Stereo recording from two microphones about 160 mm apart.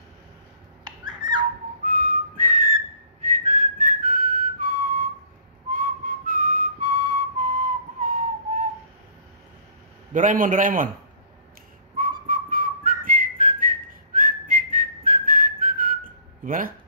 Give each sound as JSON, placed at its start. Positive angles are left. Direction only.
{"t": 1.9, "sound": "whistling", "side_deg": -60}
{"t": 5.7, "sound": "whistle", "side_deg": -55}
{"t": 10.1, "sound": "a man's voice", "side_deg": -55}
{"t": 12.0, "sound": "whistling", "side_deg": -60}